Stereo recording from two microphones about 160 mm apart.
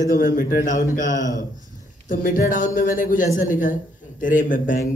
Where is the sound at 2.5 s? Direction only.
55° left (ahead or behind).